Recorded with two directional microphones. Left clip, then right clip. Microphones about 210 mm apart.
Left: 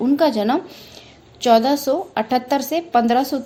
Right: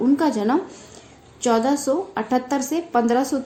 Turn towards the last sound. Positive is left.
turn(degrees=25)  # may be behind; listen again after turning